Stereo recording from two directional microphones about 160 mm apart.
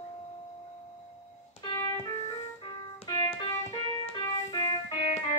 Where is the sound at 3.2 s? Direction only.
30° left (ahead or behind).